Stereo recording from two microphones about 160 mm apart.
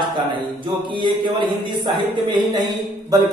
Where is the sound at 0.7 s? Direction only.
30° right (ahead or behind).